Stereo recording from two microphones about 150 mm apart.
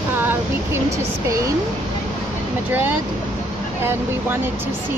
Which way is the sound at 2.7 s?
10° right (ahead or behind).